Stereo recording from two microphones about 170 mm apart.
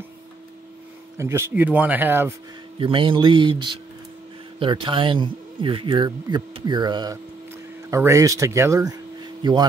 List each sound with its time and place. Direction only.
1.1 s speech: 15° right (ahead or behind)
2.8 s a man's voice: 30° right (ahead or behind)